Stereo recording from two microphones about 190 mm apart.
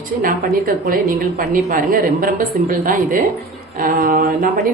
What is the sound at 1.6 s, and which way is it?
A woman's voice, 45° right (ahead or behind).